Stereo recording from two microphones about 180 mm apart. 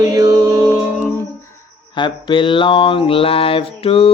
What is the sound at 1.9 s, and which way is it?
Mantra, 25° left (ahead or behind).